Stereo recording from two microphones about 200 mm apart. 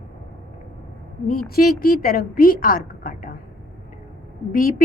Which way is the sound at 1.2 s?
45° left (ahead or behind).